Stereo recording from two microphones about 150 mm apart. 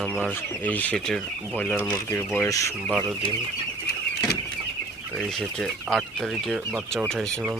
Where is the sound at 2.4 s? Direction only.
20° left (ahead or behind).